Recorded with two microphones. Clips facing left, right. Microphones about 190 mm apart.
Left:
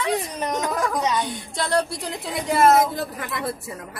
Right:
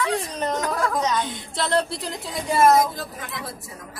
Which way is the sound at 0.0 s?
15° left (ahead or behind).